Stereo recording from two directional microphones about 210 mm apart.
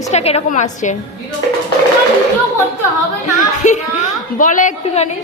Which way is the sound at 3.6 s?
35° left (ahead or behind).